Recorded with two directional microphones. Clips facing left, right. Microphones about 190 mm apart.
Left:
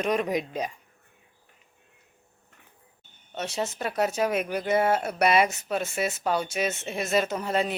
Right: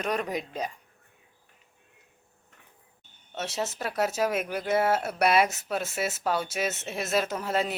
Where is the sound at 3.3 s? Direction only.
Centre (ahead or behind).